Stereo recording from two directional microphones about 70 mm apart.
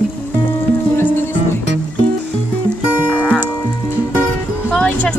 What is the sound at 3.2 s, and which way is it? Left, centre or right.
Music, centre.